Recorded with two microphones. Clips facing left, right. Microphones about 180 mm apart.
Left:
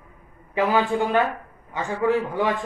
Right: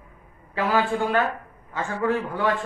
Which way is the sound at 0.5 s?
20° left (ahead or behind).